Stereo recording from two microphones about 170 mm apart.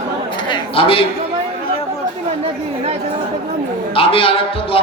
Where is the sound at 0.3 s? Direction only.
25° left (ahead or behind).